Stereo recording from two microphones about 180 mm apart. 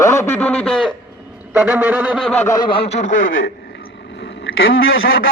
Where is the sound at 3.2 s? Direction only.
90° left.